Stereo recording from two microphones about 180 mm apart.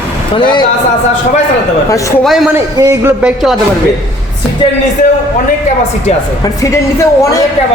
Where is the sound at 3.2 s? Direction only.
Centre (ahead or behind).